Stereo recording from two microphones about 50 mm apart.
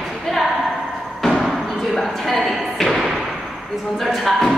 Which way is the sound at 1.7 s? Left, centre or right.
Centre.